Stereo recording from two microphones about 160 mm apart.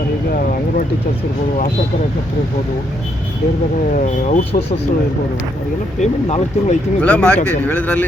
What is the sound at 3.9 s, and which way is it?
Speech, 55° left (ahead or behind).